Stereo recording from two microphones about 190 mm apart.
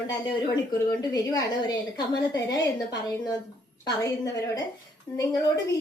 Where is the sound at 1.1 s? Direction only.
20° left (ahead or behind).